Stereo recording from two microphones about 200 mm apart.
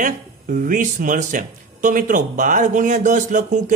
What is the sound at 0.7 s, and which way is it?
Speech, 40° right (ahead or behind).